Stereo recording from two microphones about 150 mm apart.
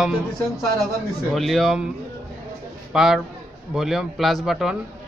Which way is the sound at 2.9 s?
5° right (ahead or behind).